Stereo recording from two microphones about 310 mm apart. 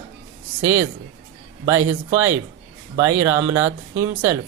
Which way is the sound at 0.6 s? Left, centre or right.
Right.